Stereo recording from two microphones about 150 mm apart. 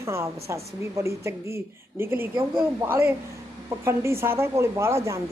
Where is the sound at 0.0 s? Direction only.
20° right (ahead or behind).